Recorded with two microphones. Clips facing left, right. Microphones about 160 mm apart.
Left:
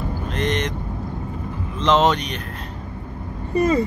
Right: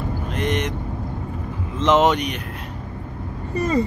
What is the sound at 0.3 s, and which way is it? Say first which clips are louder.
Vehicle: even; 10° right (ahead or behind).